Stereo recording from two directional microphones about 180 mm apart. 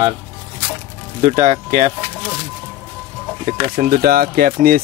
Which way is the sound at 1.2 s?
45° right (ahead or behind).